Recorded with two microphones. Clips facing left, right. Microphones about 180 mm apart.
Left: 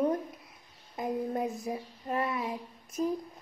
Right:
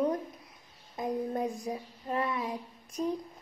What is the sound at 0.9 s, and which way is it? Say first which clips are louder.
A woman's voice: even; centre (ahead or behind).